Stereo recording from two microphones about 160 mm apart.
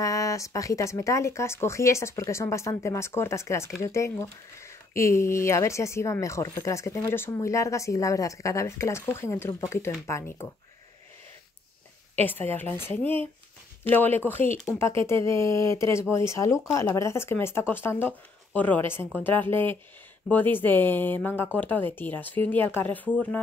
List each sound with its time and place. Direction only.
0.0 s speech: 20° left (ahead or behind)
12.3 s speech: 10° left (ahead or behind)